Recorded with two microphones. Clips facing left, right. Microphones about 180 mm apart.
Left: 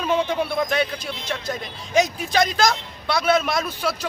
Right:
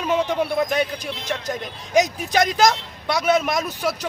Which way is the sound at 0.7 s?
10° right (ahead or behind).